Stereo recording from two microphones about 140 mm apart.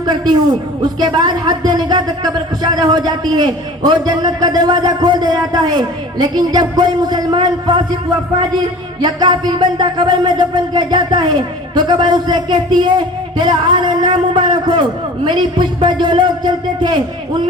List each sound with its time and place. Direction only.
0.0 s a man's voice: 30° right (ahead or behind)
9.0 s speech: 30° right (ahead or behind)